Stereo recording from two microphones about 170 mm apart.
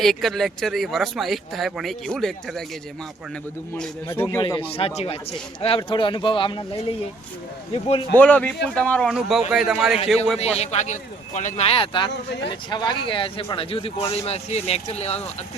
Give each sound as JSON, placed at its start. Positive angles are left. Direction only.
{"t": 0.0, "sound": "speech", "side_deg": 0}
{"t": 4.1, "sound": "a man's voice", "side_deg": 15}
{"t": 4.4, "sound": "speech", "side_deg": 25}
{"t": 7.7, "sound": "speech", "side_deg": 35}
{"t": 8.1, "sound": "a man's voice", "side_deg": 10}
{"t": 10.6, "sound": "speech", "side_deg": 40}
{"t": 12.1, "sound": "speech", "side_deg": 90}
{"t": 12.5, "sound": "speech", "side_deg": 25}